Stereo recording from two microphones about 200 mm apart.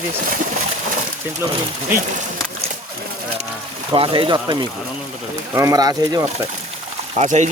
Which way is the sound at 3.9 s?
25° right (ahead or behind).